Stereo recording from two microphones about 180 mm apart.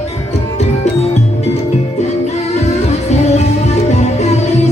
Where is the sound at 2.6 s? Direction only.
40° left (ahead or behind).